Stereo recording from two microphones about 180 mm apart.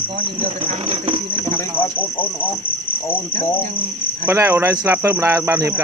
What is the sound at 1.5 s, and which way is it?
Speech, 10° left (ahead or behind).